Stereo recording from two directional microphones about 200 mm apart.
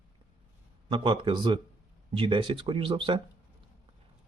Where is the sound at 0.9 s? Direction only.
25° right (ahead or behind).